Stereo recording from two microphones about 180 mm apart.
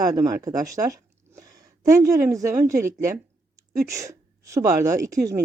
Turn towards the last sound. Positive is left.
turn(degrees=-20)  # may be behind; listen again after turning